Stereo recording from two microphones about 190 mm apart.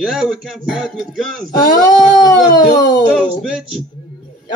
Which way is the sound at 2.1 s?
20° left (ahead or behind).